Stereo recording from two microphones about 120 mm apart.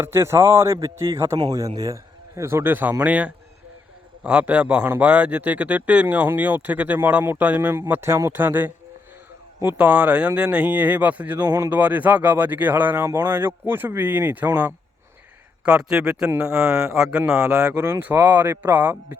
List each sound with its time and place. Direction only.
0.0 s a man's voice: 20° right (ahead or behind)
11.8 s speech: 15° right (ahead or behind)
15.6 s speech: 5° right (ahead or behind)